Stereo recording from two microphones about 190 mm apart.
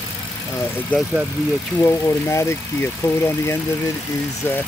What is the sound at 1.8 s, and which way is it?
Speech, 15° left (ahead or behind).